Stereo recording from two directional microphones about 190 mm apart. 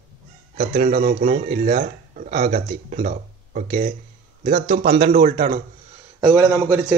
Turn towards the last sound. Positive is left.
turn(degrees=-15)  # may be behind; listen again after turning